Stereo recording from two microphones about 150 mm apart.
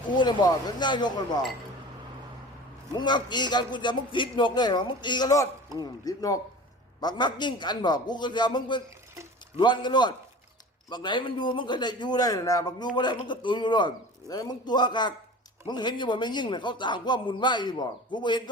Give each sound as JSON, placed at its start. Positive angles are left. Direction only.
{"t": 0.1, "sound": "a man's voice", "side_deg": 30}
{"t": 2.9, "sound": "a man's voice", "side_deg": 30}